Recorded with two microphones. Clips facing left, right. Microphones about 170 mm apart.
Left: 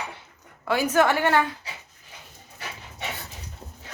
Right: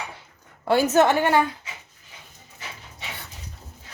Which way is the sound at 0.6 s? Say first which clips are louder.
Right 3 dB; 25° right (ahead or behind).